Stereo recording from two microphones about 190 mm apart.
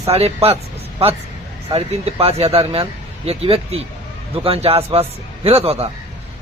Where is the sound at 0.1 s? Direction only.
30° right (ahead or behind).